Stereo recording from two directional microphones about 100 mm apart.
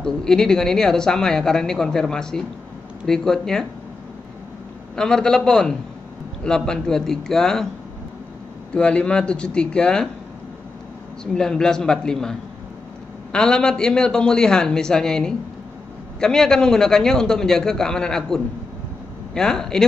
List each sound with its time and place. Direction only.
0.0 s speech: 5° left (ahead or behind)
4.9 s a man's voice: 5° left (ahead or behind)
8.7 s a man's voice: 10° left (ahead or behind)
11.3 s a man's voice: 5° left (ahead or behind)